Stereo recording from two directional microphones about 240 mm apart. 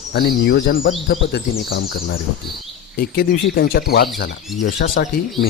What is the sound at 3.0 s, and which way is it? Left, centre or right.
Speech, left.